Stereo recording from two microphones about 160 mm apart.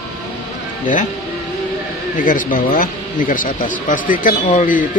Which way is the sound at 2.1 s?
55° left (ahead or behind).